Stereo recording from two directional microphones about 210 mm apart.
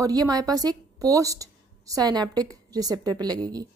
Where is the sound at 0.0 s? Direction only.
20° right (ahead or behind).